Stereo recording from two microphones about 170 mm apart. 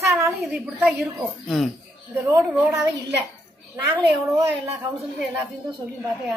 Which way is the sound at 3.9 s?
25° right (ahead or behind).